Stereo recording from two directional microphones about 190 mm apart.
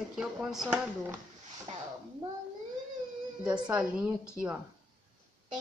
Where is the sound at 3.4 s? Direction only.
5° right (ahead or behind).